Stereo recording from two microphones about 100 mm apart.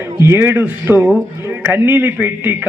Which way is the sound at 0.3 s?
20° right (ahead or behind).